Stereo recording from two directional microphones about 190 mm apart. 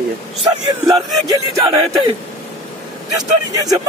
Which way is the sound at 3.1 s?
20° right (ahead or behind).